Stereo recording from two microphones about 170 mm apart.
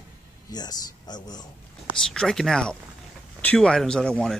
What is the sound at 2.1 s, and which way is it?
Speech, 5° left (ahead or behind).